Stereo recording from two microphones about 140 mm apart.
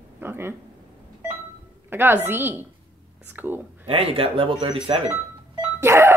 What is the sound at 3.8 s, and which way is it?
Speech, 45° right (ahead or behind).